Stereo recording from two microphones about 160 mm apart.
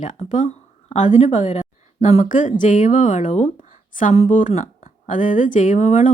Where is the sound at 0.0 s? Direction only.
50° left (ahead or behind).